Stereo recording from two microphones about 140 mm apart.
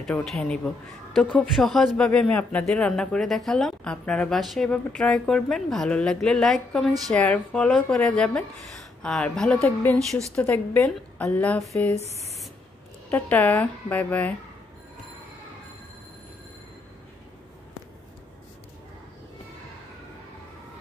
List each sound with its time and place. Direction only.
0.0 s a woman's voice: 5° left (ahead or behind)
11.9 s speech: 50° right (ahead or behind)
13.1 s speech: 10° left (ahead or behind)